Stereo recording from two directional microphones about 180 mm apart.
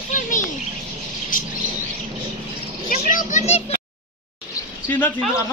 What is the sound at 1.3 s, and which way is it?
Bird, 50° left (ahead or behind).